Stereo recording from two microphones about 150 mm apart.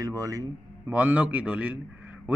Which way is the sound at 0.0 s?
25° right (ahead or behind).